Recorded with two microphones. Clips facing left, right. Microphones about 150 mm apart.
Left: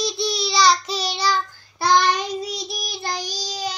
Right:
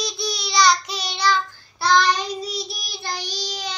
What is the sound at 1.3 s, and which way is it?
Child singing, 50° left (ahead or behind).